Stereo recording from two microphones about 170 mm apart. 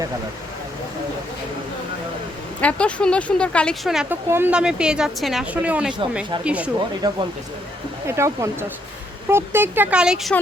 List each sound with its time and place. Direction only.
2.6 s a woman's voice: 5° left (ahead or behind)
7.0 s speech: 20° right (ahead or behind); by 10.3 s 5° right (ahead or behind)